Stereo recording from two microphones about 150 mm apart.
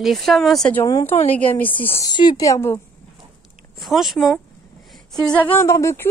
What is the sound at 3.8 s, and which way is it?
A woman's voice, centre (ahead or behind).